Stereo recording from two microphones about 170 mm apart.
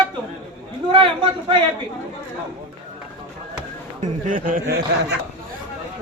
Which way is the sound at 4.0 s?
50° right (ahead or behind).